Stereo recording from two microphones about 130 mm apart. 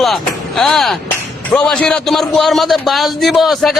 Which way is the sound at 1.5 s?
10° left (ahead or behind).